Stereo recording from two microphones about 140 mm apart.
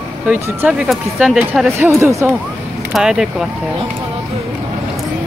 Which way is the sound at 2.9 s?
5° right (ahead or behind).